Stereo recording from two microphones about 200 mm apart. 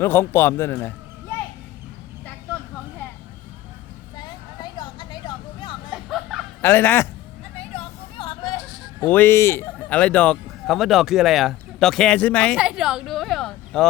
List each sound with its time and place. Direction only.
0.0 s a man's voice: 10° left (ahead or behind)
4.2 s vehicle: 20° left (ahead or behind)
5.9 s music: centre (ahead or behind)
6.6 s fowl: 10° left (ahead or behind)
7.5 s a sound: 30° left (ahead or behind)
9.0 s speech: 10° left (ahead or behind)
12.5 s a sound: 5° right (ahead or behind)